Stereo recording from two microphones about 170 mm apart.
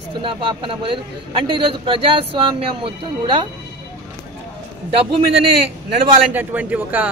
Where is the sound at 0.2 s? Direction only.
30° right (ahead or behind).